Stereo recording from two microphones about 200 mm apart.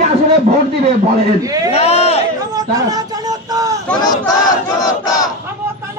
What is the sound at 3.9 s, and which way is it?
Battle cry, 20° left (ahead or behind).